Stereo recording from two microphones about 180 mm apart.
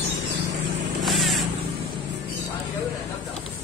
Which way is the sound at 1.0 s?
Centre (ahead or behind).